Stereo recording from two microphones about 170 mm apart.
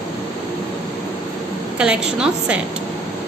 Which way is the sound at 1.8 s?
5° right (ahead or behind).